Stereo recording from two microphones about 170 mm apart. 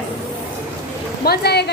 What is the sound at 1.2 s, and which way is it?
Speech, 70° left (ahead or behind).